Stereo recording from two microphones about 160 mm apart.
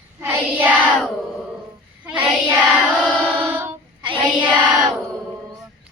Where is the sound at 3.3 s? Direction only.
10° right (ahead or behind).